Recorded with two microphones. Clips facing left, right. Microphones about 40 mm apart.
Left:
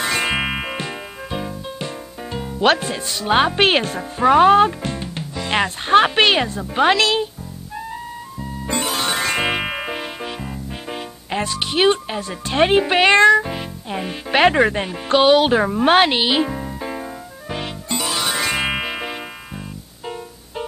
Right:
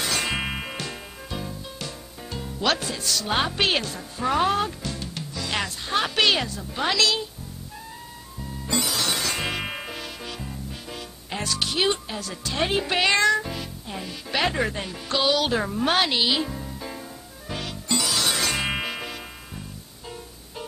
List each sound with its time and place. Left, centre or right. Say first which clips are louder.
0.0 s music: left 6 dB; left
8.4 s music: left 3 dB; left
12.5 s speech: left 9 dB; left
13.4 s music: left 7 dB; left
18.2 s music: left 4 dB; left